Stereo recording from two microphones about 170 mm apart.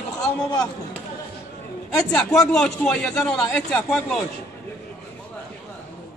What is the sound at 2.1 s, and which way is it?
Speech, 5° left (ahead or behind).